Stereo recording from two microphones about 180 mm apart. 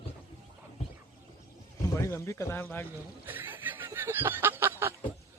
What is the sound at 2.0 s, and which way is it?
Speech, 15° left (ahead or behind).